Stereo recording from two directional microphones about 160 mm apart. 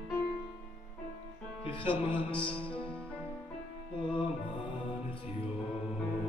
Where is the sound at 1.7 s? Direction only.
35° left (ahead or behind).